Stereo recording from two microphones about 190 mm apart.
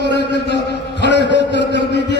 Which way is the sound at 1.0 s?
65° left (ahead or behind).